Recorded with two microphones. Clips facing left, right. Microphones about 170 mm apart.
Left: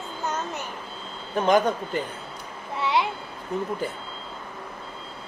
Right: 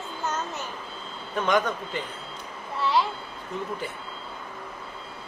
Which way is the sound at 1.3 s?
35° left (ahead or behind).